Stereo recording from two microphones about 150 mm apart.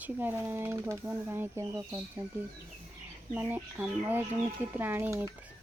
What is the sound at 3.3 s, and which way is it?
Speech, 10° right (ahead or behind).